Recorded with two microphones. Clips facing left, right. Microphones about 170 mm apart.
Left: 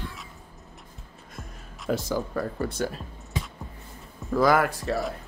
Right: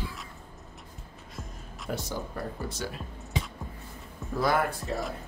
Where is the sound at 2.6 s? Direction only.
55° left (ahead or behind).